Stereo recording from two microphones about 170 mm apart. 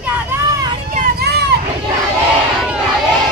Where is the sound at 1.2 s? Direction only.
80° right.